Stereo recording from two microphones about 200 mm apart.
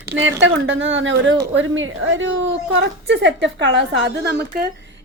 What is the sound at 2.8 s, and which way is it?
A woman's voice, 60° right (ahead or behind).